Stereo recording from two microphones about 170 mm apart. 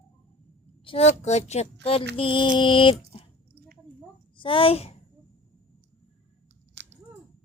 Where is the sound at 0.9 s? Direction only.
40° left (ahead or behind).